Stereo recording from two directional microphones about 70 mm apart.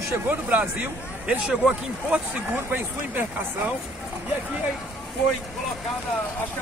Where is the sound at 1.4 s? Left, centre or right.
Centre.